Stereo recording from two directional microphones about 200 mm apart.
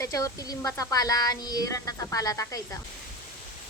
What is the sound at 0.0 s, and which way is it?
Speech, 15° left (ahead or behind).